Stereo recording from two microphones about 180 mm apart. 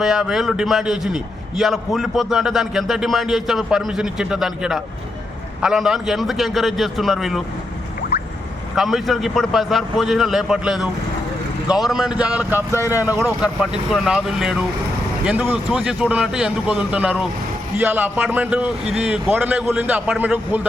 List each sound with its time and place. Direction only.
0.0 s a man's voice: centre (ahead or behind)
8.7 s a man's voice: centre (ahead or behind)
12.7 s speech: 15° left (ahead or behind)
13.2 s a man's voice: centre (ahead or behind)